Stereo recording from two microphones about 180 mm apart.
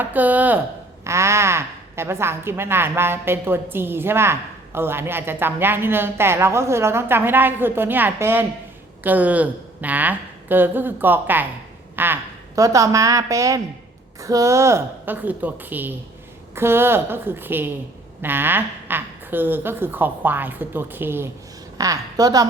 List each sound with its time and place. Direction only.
0.0 s a woman's voice: 10° right (ahead or behind)